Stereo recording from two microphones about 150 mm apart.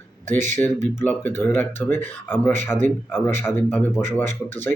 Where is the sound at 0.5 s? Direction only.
15° left (ahead or behind).